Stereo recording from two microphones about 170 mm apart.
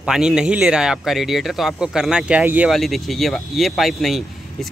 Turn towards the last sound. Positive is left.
turn(degrees=0)  # may be behind; listen again after turning